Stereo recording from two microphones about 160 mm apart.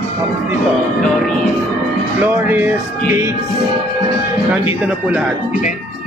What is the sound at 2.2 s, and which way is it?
Music, 10° right (ahead or behind).